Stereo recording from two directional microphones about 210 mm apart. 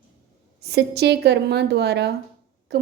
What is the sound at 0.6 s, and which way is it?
A woman's voice, 50° right (ahead or behind).